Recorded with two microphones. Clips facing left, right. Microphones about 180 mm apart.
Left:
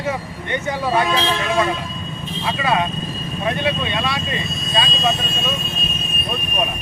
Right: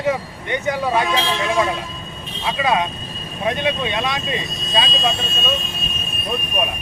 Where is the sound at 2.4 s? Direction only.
15° right (ahead or behind).